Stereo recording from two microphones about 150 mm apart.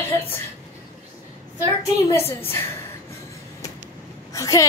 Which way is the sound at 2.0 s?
15° left (ahead or behind).